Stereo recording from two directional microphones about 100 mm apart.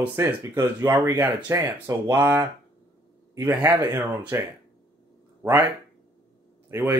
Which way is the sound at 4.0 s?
25° right (ahead or behind).